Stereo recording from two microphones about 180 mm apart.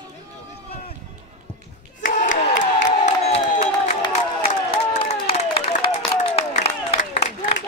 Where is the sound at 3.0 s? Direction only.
35° left (ahead or behind).